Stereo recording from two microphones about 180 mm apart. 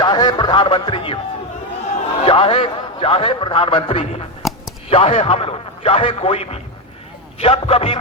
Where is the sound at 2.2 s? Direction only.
30° left (ahead or behind).